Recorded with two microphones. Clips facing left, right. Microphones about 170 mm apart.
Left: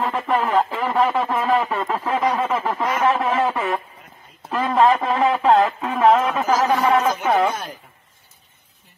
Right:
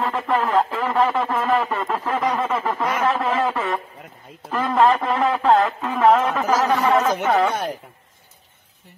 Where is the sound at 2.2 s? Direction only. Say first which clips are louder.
Left 1 dB; centre (ahead or behind).